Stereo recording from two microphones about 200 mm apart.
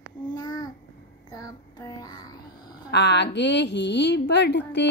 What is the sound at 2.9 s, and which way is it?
Speech, 60° left (ahead or behind).